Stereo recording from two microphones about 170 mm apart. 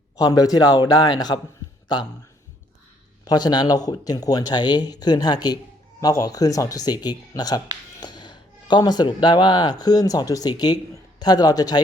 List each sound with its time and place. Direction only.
0.2 s speech: 20° left (ahead or behind)
3.2 s speech: 25° left (ahead or behind)